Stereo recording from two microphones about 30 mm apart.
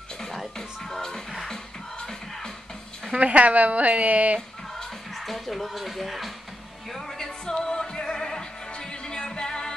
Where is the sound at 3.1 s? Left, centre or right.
Right.